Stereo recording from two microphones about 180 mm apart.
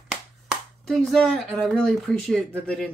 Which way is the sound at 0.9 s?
Centre (ahead or behind).